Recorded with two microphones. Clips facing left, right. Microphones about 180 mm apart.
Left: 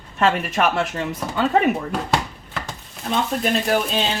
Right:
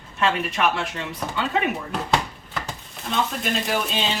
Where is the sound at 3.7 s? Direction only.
45° left (ahead or behind).